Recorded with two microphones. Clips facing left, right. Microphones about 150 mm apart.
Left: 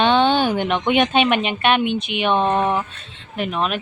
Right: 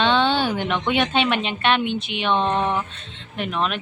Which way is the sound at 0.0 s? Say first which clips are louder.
Left 3 dB; 15° left (ahead or behind).